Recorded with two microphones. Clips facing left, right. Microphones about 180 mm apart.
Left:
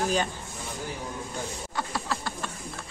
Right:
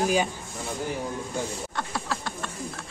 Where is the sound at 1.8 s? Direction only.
Centre (ahead or behind).